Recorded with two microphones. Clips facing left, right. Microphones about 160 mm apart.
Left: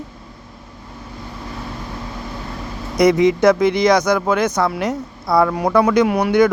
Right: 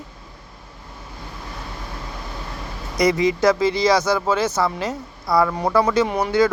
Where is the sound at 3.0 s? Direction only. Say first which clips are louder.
Left 5 dB; 20° left (ahead or behind).